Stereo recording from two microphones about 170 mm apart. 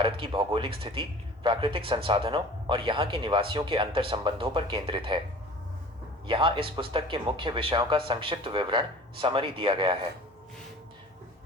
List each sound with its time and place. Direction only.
0.0 s speech: 30° right (ahead or behind)
6.2 s speech: 30° right (ahead or behind)